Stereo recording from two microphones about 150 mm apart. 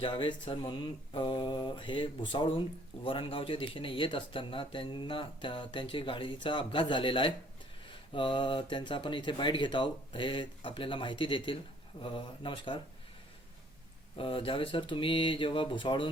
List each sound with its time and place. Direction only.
0.0 s speech: 30° left (ahead or behind)
14.2 s speech: 35° left (ahead or behind)